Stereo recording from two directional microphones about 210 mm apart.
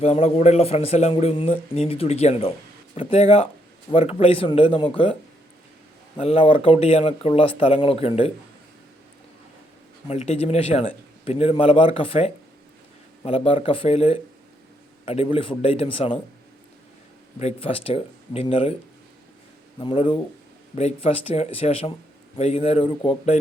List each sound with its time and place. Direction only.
0.0 s speech: 30° left (ahead or behind)
6.1 s speech: 30° left (ahead or behind)
10.1 s speech: 30° left (ahead or behind)
17.4 s speech: 25° left (ahead or behind)
19.8 s speech: 25° left (ahead or behind)